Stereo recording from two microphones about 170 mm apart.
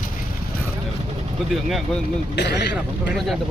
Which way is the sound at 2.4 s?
80° left.